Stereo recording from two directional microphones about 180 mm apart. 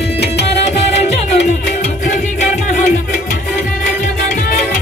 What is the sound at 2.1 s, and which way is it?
Music, 45° left (ahead or behind).